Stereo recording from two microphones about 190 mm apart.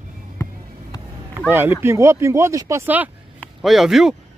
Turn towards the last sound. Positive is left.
turn(degrees=0)  # may be behind; listen again after turning